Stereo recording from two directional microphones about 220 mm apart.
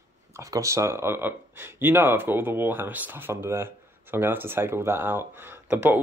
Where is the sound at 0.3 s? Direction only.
15° right (ahead or behind).